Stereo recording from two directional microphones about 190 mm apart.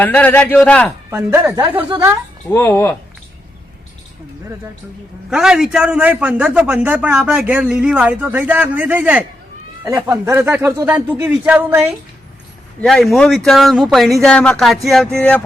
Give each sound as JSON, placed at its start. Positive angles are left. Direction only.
{"t": 0.0, "sound": "a man's voice", "side_deg": 10}
{"t": 1.1, "sound": "a man's voice", "side_deg": -15}
{"t": 2.5, "sound": "a man's voice", "side_deg": 10}
{"t": 5.3, "sound": "a man's voice", "side_deg": -5}
{"t": 12.8, "sound": "speech", "side_deg": 0}